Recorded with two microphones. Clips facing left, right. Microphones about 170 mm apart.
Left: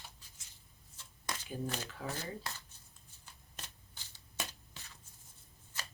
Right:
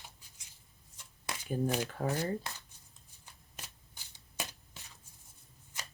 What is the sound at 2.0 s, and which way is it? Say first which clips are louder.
Speech: right 7 dB; 45° right (ahead or behind).